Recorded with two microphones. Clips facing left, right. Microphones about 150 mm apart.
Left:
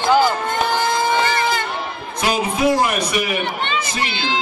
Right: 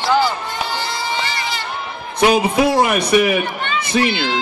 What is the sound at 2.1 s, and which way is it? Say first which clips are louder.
A man's voice: right 6 dB; 60° right (ahead or behind).